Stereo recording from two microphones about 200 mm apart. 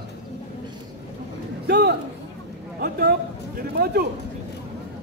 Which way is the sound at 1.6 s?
55° right (ahead or behind).